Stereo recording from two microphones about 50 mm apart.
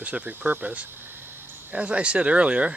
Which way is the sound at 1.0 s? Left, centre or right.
Right.